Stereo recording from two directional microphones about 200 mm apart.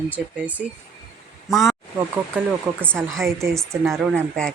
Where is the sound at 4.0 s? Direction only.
Centre (ahead or behind).